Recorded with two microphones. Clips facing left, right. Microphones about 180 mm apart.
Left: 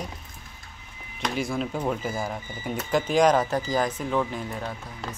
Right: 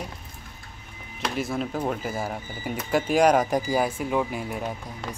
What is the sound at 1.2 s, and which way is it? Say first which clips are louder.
Speech: even; centre (ahead or behind).